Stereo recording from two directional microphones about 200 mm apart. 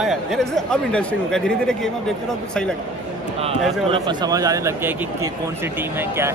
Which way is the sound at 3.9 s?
20° right (ahead or behind).